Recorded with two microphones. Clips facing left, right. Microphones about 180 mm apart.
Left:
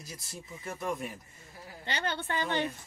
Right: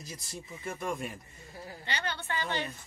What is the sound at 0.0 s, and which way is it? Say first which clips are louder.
Speech: right 2 dB; centre (ahead or behind).